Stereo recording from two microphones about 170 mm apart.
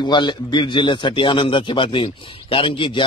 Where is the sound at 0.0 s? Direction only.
25° left (ahead or behind).